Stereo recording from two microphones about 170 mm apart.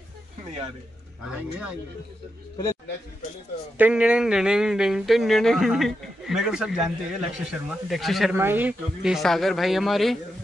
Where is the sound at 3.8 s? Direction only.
5° right (ahead or behind).